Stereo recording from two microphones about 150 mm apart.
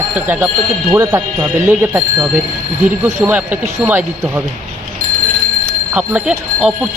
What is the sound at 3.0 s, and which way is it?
Speech, 15° right (ahead or behind).